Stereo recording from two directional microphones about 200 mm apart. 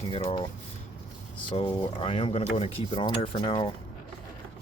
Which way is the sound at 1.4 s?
25° left (ahead or behind).